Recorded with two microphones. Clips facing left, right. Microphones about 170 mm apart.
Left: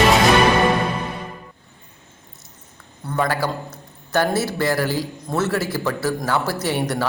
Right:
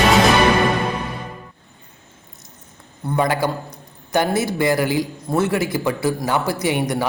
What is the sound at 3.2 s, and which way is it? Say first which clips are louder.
A man's voice: right 2 dB; 20° right (ahead or behind).